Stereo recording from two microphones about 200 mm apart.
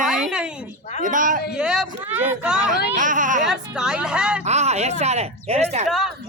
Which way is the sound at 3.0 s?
40° right (ahead or behind).